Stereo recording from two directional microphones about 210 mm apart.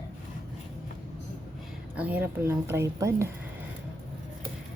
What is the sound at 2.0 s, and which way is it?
A woman's voice, 5° right (ahead or behind).